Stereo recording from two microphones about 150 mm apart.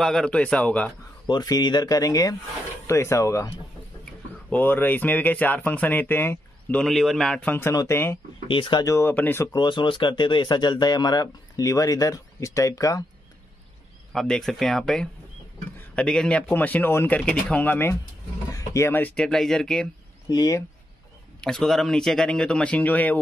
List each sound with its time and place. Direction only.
0.0 s speech: 5° left (ahead or behind)
1.2 s speech: 30° left (ahead or behind)
6.8 s speech: centre (ahead or behind); by 8.2 s 15° left (ahead or behind)
8.5 s speech: 35° left (ahead or behind)
8.9 s speech: 15° left (ahead or behind)
9.6 s speech: 30° left (ahead or behind)
14.1 s speech: centre (ahead or behind)
20.2 s speech: 25° left (ahead or behind)
21.4 s speech: 5° left (ahead or behind)